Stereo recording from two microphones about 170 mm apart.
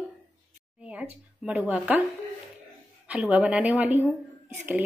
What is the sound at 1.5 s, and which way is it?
Speech, 5° right (ahead or behind).